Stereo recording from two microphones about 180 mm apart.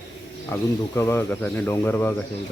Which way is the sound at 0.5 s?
15° left (ahead or behind).